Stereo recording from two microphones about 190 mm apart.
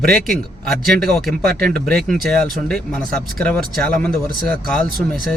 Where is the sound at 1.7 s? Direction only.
Centre (ahead or behind).